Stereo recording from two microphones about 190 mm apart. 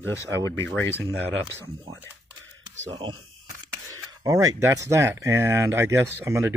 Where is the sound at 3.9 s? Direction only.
15° right (ahead or behind).